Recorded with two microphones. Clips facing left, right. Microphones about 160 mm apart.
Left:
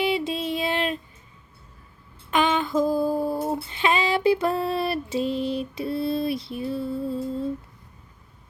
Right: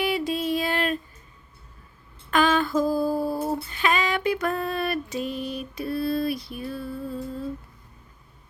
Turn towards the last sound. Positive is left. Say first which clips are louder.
# left 4 dB
turn(degrees=25)  # may be behind; listen again after turning